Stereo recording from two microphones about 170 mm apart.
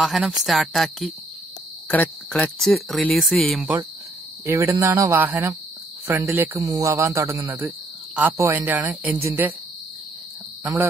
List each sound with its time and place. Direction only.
0.0 s speech: centre (ahead or behind)
4.5 s speech: 15° right (ahead or behind)